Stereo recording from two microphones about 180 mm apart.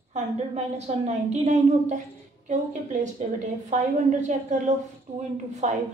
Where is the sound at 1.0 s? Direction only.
40° right (ahead or behind).